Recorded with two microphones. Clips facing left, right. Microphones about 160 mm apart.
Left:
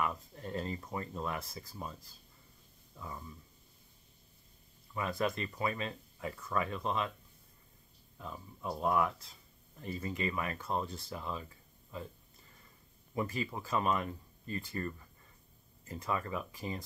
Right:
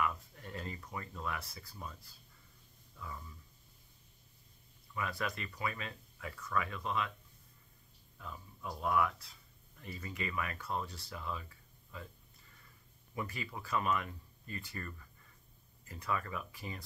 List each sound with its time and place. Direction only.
0.0 s speech: 30° left (ahead or behind)
3.0 s speech: 25° left (ahead or behind)
4.9 s speech: 30° left (ahead or behind)
8.2 s speech: 25° left (ahead or behind)
13.1 s speech: 30° left (ahead or behind)